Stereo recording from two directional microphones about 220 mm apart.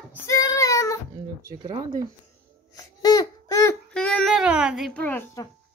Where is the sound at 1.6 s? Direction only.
20° right (ahead or behind).